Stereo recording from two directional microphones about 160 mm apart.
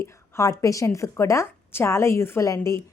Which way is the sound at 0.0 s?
20° left (ahead or behind).